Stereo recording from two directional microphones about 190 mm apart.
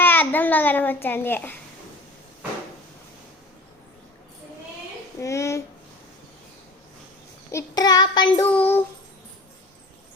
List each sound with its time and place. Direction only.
0.0 s a child's voice: 10° left (ahead or behind)
5.2 s a child's voice: 15° left (ahead or behind)
7.5 s child singing: 20° left (ahead or behind)
8.4 s a child's voice: 10° left (ahead or behind)